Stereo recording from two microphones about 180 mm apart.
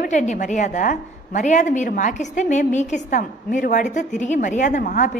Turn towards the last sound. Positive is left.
turn(degrees=45)  # may be behind; listen again after turning